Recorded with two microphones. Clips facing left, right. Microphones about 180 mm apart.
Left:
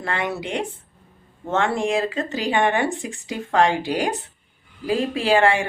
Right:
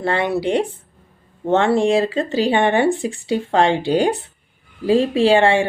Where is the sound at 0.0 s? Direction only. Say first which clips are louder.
Right 7 dB; 30° right (ahead or behind).